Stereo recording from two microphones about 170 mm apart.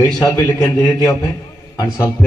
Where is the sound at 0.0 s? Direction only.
20° left (ahead or behind).